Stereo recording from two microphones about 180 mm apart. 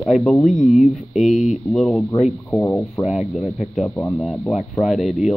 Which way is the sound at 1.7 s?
Centre (ahead or behind).